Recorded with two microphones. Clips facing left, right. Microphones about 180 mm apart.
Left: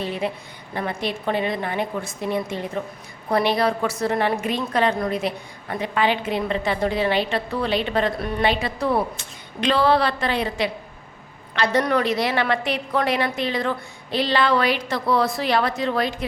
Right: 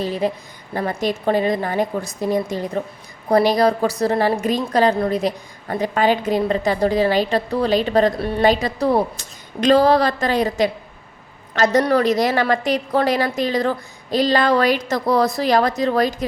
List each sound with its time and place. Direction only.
0.0 s a woman's voice: 35° right (ahead or behind)